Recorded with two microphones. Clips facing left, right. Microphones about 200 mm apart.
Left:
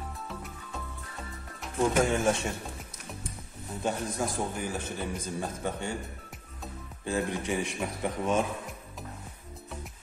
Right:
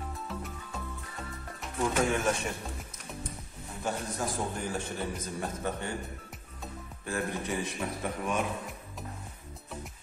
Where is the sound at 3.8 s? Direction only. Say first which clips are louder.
Left 3 dB; 20° left (ahead or behind).